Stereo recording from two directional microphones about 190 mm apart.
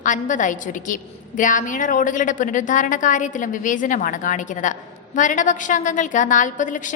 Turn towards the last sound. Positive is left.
turn(degrees=40)  # may be behind; listen again after turning